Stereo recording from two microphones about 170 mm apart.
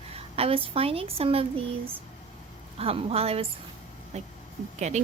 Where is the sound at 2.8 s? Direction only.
35° right (ahead or behind).